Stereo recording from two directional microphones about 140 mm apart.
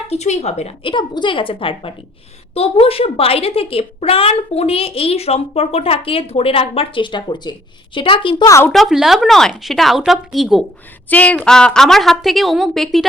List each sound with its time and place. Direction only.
0.1 s a woman's voice: 50° left (ahead or behind)
0.9 s a woman's voice: 35° left (ahead or behind)
8.4 s speech: 20° left (ahead or behind)
8.7 s a woman's voice: centre (ahead or behind)
11.1 s a woman's voice: 10° left (ahead or behind)